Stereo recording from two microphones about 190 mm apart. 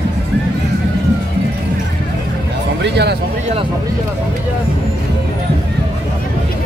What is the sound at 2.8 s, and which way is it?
Speech, 60° right (ahead or behind).